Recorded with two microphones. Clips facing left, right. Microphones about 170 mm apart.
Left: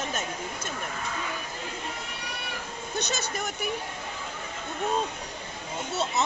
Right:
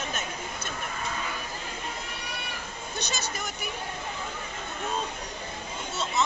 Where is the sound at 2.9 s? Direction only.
55° left (ahead or behind).